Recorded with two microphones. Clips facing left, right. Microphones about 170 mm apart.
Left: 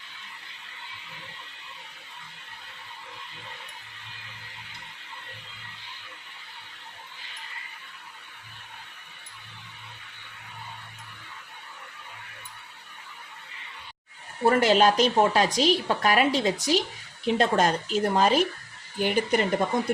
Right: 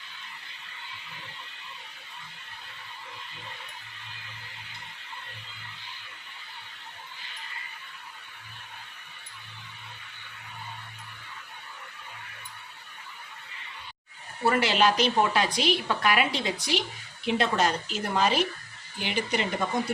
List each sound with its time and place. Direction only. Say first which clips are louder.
14.4 s a woman's voice: left 4 dB; 45° left (ahead or behind)